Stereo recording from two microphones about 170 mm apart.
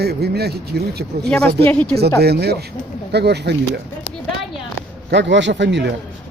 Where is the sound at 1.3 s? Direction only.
5° left (ahead or behind).